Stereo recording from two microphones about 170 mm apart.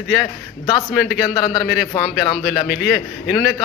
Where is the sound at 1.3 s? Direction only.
25° left (ahead or behind).